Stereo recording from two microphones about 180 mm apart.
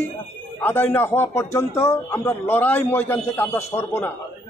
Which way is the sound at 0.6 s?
10° left (ahead or behind).